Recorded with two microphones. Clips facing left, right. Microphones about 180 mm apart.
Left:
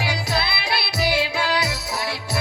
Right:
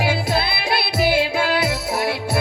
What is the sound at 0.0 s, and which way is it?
Music, 55° right (ahead or behind).